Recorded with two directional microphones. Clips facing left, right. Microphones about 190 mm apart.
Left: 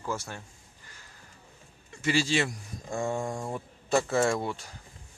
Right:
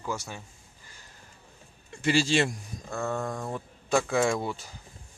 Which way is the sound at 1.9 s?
30° right (ahead or behind).